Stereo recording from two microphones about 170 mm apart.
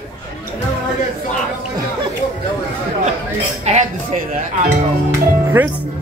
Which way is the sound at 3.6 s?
40° right (ahead or behind).